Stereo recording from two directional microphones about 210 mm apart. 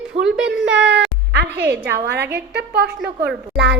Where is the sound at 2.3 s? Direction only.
55° right (ahead or behind).